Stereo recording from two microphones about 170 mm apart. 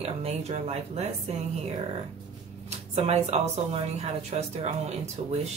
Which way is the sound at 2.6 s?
40° right (ahead or behind).